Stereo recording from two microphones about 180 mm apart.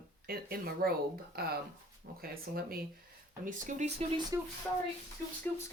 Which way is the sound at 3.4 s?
45° right (ahead or behind).